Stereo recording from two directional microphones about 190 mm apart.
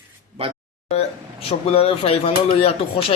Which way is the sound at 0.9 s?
30° left (ahead or behind).